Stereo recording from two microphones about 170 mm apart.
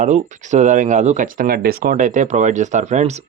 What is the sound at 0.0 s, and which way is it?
Speech, 45° right (ahead or behind).